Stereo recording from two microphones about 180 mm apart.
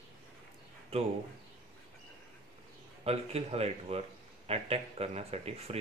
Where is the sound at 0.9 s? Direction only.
35° right (ahead or behind).